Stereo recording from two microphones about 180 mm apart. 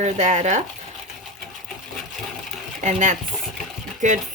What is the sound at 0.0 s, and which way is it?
Speech, 40° right (ahead or behind).